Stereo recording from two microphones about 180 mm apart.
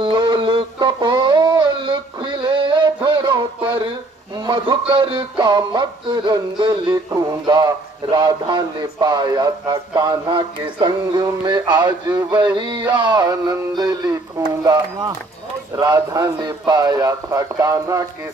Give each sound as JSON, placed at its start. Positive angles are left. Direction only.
{"t": 0.0, "sound": "a sound", "side_deg": -25}
{"t": 2.4, "sound": "music", "side_deg": -25}
{"t": 4.5, "sound": "a man's voice", "side_deg": -25}